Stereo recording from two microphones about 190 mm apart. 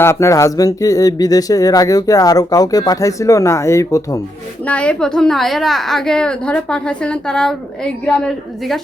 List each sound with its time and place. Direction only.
0.0 s a woman's voice: 15° left (ahead or behind)